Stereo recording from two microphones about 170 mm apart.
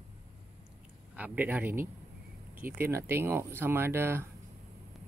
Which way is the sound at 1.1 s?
10° right (ahead or behind).